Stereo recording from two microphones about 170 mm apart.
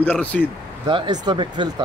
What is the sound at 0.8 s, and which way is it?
Speech, 30° right (ahead or behind).